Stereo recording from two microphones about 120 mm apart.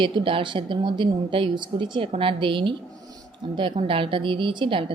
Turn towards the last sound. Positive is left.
turn(degrees=-45)  # may be behind; listen again after turning